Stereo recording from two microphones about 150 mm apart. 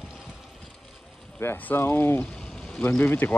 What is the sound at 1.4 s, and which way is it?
Speech, 15° left (ahead or behind).